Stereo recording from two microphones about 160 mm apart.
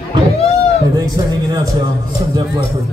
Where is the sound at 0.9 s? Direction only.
20° right (ahead or behind).